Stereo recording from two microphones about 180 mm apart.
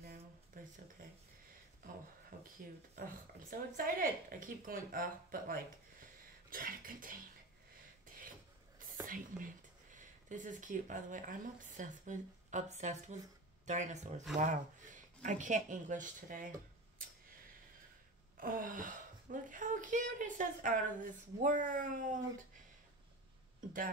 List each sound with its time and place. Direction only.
3.0 s speech: 50° right (ahead or behind)
9.0 s speech: 50° right (ahead or behind)
18.4 s speech: 50° right (ahead or behind)